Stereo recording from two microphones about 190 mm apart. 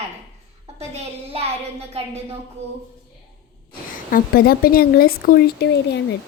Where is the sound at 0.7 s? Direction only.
35° right (ahead or behind).